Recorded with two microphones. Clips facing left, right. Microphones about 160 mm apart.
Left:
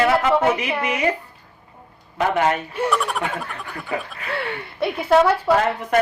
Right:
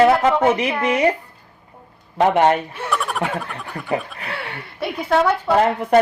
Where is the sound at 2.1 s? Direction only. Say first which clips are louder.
Right 4 dB; 35° right (ahead or behind).